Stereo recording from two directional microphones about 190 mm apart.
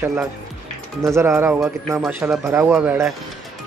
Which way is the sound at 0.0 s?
5° right (ahead or behind).